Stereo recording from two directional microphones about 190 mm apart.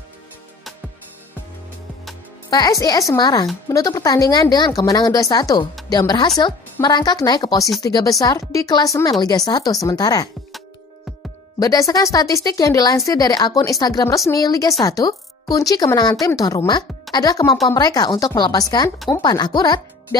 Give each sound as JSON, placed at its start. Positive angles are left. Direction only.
{"t": 2.5, "sound": "a woman's voice", "side_deg": 20}
{"t": 11.6, "sound": "a woman's voice", "side_deg": 20}